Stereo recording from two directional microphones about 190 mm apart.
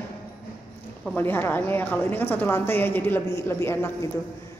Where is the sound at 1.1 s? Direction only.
10° left (ahead or behind).